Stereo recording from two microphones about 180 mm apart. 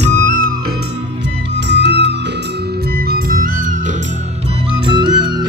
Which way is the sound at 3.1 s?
55° right (ahead or behind).